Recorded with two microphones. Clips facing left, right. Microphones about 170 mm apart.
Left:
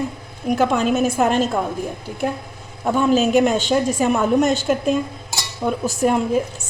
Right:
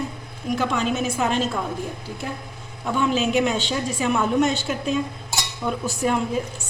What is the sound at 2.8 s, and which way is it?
A woman's voice, 45° left (ahead or behind).